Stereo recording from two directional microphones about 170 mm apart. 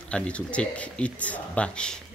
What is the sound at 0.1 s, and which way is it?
Speech, 5° left (ahead or behind).